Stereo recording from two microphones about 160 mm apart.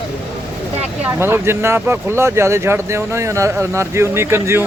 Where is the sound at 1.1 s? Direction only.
15° right (ahead or behind).